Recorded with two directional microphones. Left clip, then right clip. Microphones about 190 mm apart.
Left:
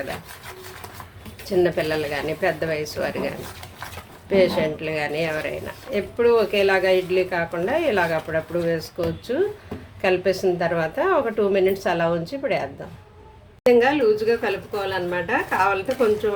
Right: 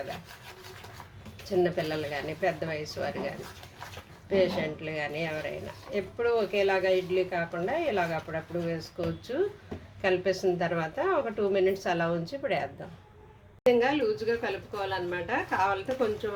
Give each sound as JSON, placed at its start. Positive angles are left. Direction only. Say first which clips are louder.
{"t": 1.5, "sound": "a woman's voice", "louder": "left 7 dB", "side_deg": 15}
{"t": 4.3, "sound": "a woman's voice", "louder": "left 8 dB", "side_deg": 15}
{"t": 13.7, "sound": "a woman's voice", "louder": "left 8 dB", "side_deg": 10}